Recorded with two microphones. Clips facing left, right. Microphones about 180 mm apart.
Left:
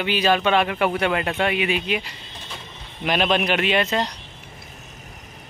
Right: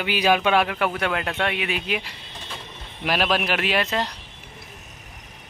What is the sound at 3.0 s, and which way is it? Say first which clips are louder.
Speech: left 2 dB; 5° right (ahead or behind).